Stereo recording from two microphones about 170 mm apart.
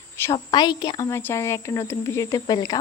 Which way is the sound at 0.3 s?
25° left (ahead or behind).